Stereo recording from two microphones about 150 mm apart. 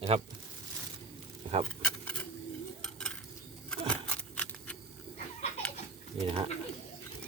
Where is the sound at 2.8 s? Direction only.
5° left (ahead or behind).